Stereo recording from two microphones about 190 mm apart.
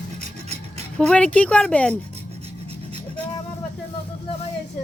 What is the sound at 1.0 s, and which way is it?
Speech, 5° left (ahead or behind).